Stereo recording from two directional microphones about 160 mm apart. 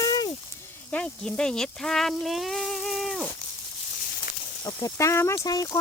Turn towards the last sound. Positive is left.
turn(degrees=20)  # may be behind; listen again after turning